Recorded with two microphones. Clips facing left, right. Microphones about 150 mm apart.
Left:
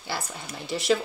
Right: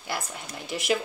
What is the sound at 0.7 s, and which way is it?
Speech, 15° right (ahead or behind).